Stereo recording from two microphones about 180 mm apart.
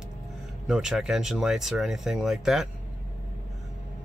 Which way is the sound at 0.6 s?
Centre (ahead or behind).